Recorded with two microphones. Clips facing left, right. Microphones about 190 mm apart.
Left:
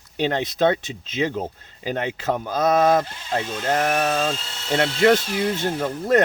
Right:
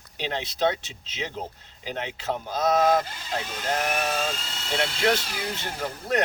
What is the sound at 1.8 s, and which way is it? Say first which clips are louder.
Speech: left 6 dB; 55° left (ahead or behind).